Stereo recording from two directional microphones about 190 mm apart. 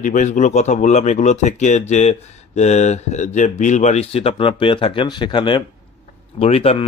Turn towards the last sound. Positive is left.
turn(degrees=30)  # may be behind; listen again after turning